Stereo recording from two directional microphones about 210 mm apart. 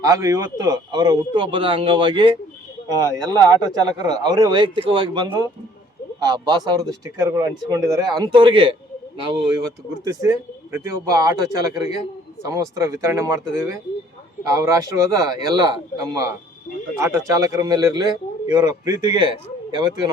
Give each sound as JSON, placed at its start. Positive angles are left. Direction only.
{"t": 0.0, "sound": "a man's voice", "side_deg": -15}